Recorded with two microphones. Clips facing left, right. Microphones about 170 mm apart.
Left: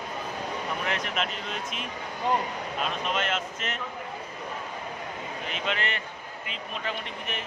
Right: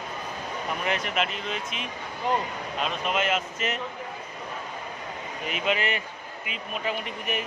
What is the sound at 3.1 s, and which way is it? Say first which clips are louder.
Speech: right 3 dB; 10° right (ahead or behind).